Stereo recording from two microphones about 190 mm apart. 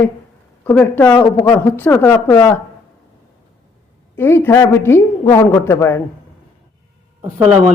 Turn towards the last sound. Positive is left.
turn(degrees=-35)  # may be behind; listen again after turning